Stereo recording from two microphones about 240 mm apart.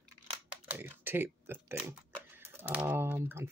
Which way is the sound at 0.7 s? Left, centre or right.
Centre.